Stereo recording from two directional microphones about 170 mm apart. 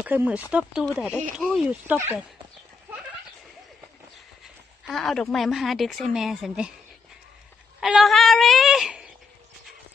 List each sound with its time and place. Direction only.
0.0 s speech: 10° right (ahead or behind)
4.8 s speech: centre (ahead or behind)
7.8 s speech: centre (ahead or behind)